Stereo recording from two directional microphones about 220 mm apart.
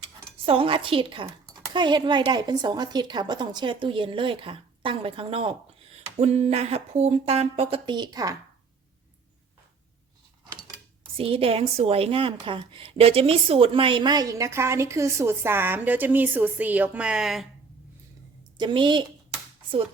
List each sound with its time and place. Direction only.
0.4 s a woman's voice: 25° right (ahead or behind)
11.2 s a woman's voice: 25° right (ahead or behind); by 17.4 s centre (ahead or behind)
18.5 s a woman's voice: 20° right (ahead or behind)